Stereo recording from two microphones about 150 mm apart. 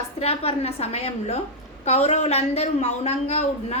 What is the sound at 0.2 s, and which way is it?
A woman's voice, 40° left (ahead or behind).